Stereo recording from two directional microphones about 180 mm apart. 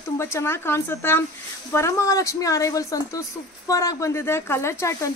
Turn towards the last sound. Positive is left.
turn(degrees=15)  # may be behind; listen again after turning